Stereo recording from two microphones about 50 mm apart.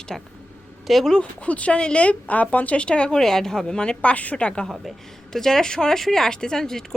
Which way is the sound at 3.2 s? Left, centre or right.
Centre.